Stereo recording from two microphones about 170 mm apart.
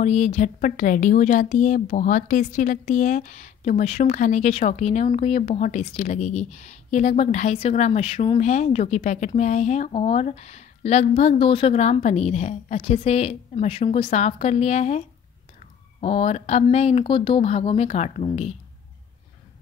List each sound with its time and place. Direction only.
0.0 s speech: 45° left (ahead or behind)